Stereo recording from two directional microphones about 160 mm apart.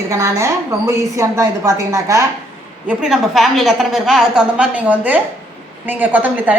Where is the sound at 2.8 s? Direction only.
5° right (ahead or behind).